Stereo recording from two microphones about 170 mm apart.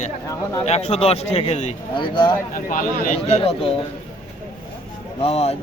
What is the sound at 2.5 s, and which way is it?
Speech, 55° left (ahead or behind).